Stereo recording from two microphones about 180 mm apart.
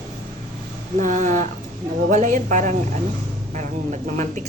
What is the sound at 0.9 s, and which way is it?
A woman's voice, 45° right (ahead or behind).